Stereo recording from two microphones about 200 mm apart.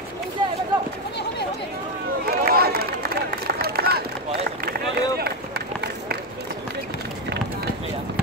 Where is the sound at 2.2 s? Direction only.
50° right (ahead or behind).